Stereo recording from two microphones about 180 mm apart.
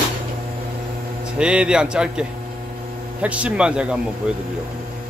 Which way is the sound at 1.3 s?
5° right (ahead or behind).